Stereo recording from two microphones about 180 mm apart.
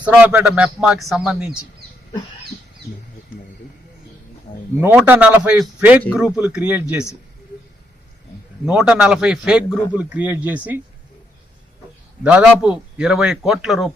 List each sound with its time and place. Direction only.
0.0 s a man's voice: 5° right (ahead or behind)
4.8 s speech: 10° right (ahead or behind)
8.6 s a man's voice: 5° right (ahead or behind)
12.2 s a man's voice: 5° right (ahead or behind)